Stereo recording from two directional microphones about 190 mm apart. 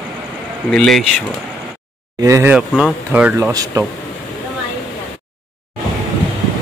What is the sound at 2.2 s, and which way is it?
Speech, 15° right (ahead or behind).